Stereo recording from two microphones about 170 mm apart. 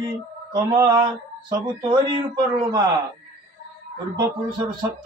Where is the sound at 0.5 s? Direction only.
25° right (ahead or behind).